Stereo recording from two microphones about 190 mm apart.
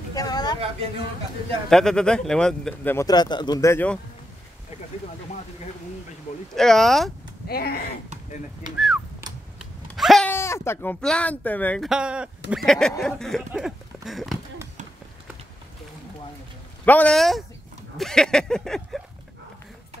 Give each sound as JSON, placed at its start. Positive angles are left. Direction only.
{"t": 0.1, "sound": "a sound", "side_deg": 20}
{"t": 1.7, "sound": "speech", "side_deg": 5}
{"t": 6.5, "sound": "speech", "side_deg": 0}
{"t": 7.4, "sound": "speech", "side_deg": 55}
{"t": 8.7, "sound": "speech", "side_deg": 0}
{"t": 9.6, "sound": "a sound", "side_deg": 0}
{"t": 10.3, "sound": "speech", "side_deg": 15}
{"t": 16.8, "sound": "speech", "side_deg": 10}
{"t": 17.9, "sound": "a sound", "side_deg": 0}